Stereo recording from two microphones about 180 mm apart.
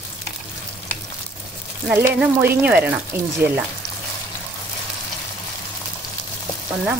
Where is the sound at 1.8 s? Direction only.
10° right (ahead or behind).